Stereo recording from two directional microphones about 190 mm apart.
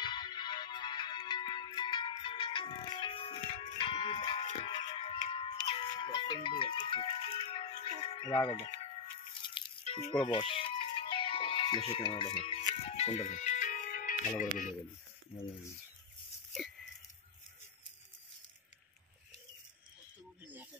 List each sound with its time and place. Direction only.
0.0 s music: 25° left (ahead or behind); by 14.7 s 45° left (ahead or behind)